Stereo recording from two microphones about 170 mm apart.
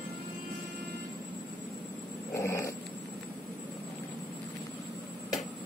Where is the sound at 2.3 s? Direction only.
15° left (ahead or behind).